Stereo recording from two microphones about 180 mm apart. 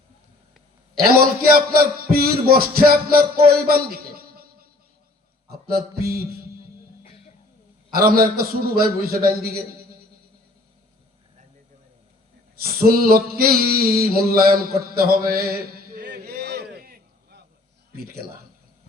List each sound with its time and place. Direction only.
1.0 s music: 55° right (ahead or behind)
5.7 s a man's voice: 55° right (ahead or behind)
7.9 s a man's voice: 55° right (ahead or behind)
12.6 s a sound: 55° right (ahead or behind)
17.9 s a man's voice: 55° right (ahead or behind)